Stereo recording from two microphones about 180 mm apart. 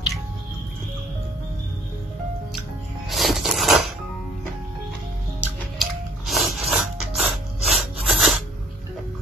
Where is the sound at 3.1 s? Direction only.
Centre (ahead or behind).